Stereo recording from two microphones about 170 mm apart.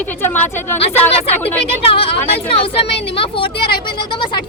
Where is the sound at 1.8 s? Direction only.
35° left (ahead or behind).